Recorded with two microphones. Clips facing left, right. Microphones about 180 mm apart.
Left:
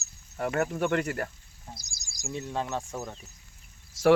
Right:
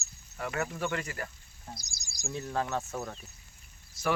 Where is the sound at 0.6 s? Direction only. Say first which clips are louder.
Left 6 dB; 55° left (ahead or behind).